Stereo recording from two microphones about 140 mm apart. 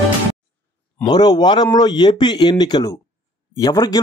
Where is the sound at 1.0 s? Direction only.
30° left (ahead or behind).